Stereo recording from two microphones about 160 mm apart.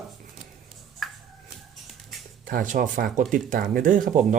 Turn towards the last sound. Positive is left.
turn(degrees=-60)  # may be behind; listen again after turning